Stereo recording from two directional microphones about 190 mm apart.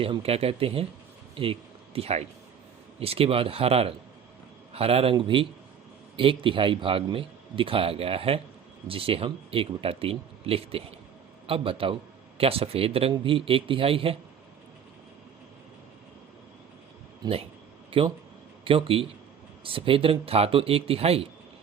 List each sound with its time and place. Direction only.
0.0 s speech: 30° right (ahead or behind)
17.2 s a man's voice: 20° right (ahead or behind)